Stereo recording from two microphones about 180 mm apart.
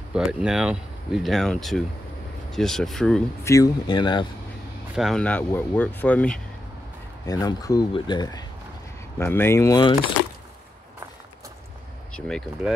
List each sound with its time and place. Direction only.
0.1 s speech: 5° right (ahead or behind)
3.4 s speech: 20° left (ahead or behind)
4.9 s speech: centre (ahead or behind)
7.2 s speech: 20° left (ahead or behind)
12.1 s speech: 5° left (ahead or behind)